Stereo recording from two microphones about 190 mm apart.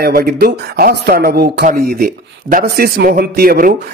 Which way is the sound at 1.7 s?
50° right (ahead or behind).